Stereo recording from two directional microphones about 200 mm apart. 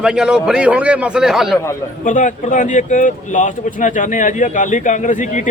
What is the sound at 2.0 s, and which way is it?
Speech, 40° left (ahead or behind).